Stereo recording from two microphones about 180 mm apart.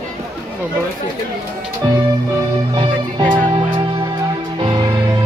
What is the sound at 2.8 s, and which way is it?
Music, 25° right (ahead or behind).